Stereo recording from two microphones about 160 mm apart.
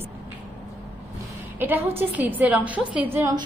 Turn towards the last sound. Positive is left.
turn(degrees=-15)  # may be behind; listen again after turning